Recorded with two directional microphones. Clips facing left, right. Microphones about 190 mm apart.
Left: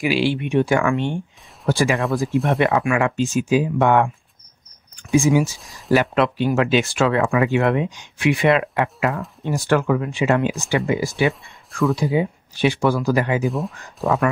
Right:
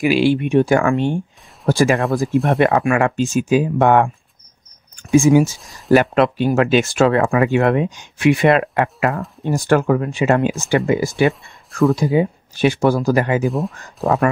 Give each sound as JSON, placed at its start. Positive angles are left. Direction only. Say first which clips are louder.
{"t": 0.0, "sound": "speech", "louder": "right 5 dB", "side_deg": -45}
{"t": 5.1, "sound": "speech", "louder": "right 5 dB", "side_deg": -45}
{"t": 13.5, "sound": "speech", "louder": "right 3 dB", "side_deg": 0}
{"t": 14.0, "sound": "speech", "louder": "right 3 dB", "side_deg": -40}